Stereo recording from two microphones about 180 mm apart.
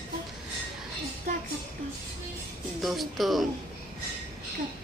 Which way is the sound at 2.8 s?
Centre (ahead or behind).